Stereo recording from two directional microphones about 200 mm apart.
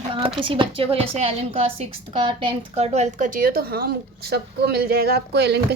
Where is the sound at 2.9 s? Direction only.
35° right (ahead or behind).